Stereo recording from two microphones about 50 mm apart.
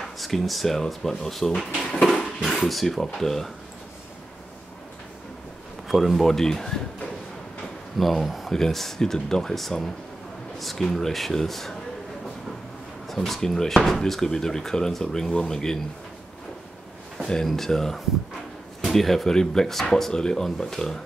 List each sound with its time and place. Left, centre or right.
0.2 s speech: centre
2.6 s speech: centre
5.9 s speech: centre
8.0 s speech: centre
8.5 s speech: centre
13.1 s speech: centre
17.2 s a sound: centre
17.5 s speech: centre